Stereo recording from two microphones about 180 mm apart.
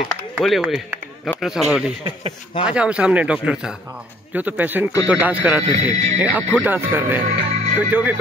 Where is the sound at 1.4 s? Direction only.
Centre (ahead or behind).